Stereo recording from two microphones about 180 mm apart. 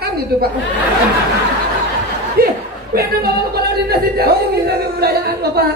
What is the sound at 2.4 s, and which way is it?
Speech, 55° right (ahead or behind).